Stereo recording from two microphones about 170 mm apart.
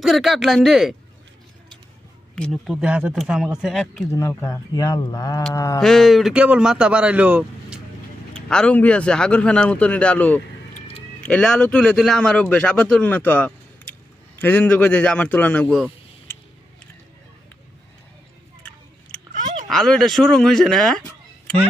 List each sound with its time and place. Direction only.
0.0 s a man's voice: centre (ahead or behind)
2.3 s a man's voice: 5° left (ahead or behind)
4.1 s speech: 15° left (ahead or behind)
5.8 s a man's voice: centre (ahead or behind)
8.3 s a man's voice: 5° left (ahead or behind)
19.3 s a sound: 50° right (ahead or behind)
19.7 s a man's voice: 5° left (ahead or behind)